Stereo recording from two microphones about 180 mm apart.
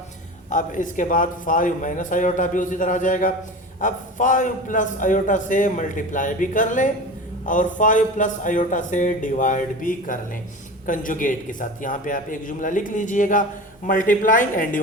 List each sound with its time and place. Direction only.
0.5 s a man's voice: 45° left (ahead or behind)